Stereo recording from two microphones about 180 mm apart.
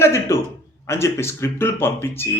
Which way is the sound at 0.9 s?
15° left (ahead or behind).